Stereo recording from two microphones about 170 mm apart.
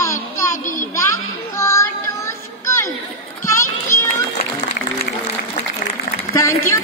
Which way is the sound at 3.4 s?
15° left (ahead or behind).